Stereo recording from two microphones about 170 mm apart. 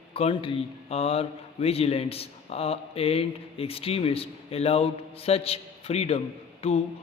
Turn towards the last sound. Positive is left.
turn(degrees=35)  # may be behind; listen again after turning